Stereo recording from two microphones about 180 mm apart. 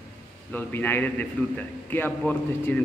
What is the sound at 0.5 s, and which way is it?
A man's voice, 10° left (ahead or behind).